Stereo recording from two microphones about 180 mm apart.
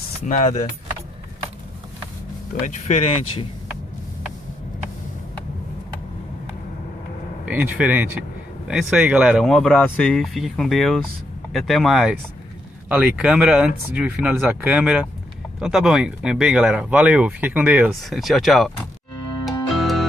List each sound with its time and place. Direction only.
0.2 s speech: 45° left (ahead or behind)
2.6 s speech: 40° left (ahead or behind)
7.4 s speech: 10° right (ahead or behind)
19.4 s music: centre (ahead or behind)